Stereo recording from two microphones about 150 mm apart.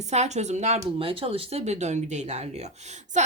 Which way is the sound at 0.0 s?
50° right (ahead or behind).